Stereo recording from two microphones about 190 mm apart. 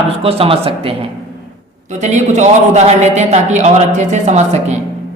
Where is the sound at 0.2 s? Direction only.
30° right (ahead or behind).